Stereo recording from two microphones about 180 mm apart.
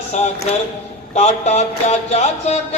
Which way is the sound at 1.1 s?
40° left (ahead or behind).